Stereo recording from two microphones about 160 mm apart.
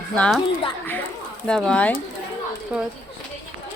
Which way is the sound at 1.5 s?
5° left (ahead or behind).